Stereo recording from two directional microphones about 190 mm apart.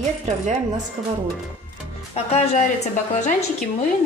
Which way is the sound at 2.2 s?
35° left (ahead or behind).